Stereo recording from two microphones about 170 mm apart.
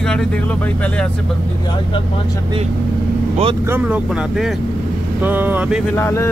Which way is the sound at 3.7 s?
10° right (ahead or behind).